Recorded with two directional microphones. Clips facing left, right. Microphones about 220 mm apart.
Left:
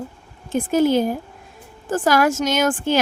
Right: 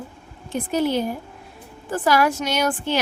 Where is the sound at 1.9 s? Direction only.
45° left (ahead or behind).